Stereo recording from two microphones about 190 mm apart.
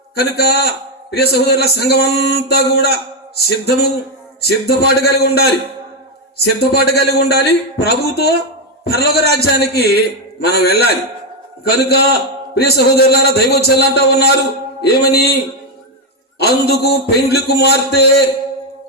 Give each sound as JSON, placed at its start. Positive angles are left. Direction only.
{"t": 0.2, "sound": "a man's voice", "side_deg": 55}
{"t": 16.4, "sound": "a man's voice", "side_deg": 55}